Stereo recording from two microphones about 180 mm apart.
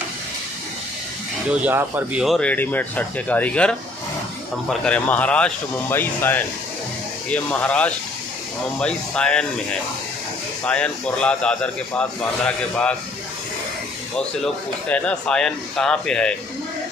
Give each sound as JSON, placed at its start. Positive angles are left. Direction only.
{"t": 1.5, "sound": "speech", "side_deg": -10}
{"t": 10.6, "sound": "speech", "side_deg": 5}
{"t": 14.1, "sound": "speech", "side_deg": 5}